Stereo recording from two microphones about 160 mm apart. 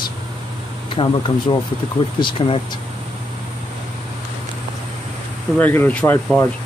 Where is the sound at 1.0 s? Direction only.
30° left (ahead or behind).